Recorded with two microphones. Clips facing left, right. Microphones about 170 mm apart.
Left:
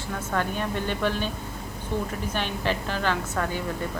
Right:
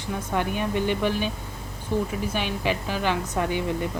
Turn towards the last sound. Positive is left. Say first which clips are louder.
# right 2 dB
turn(degrees=-15)  # may be behind; listen again after turning